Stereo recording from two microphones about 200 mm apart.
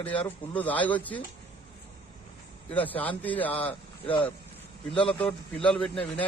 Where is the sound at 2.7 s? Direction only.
10° left (ahead or behind).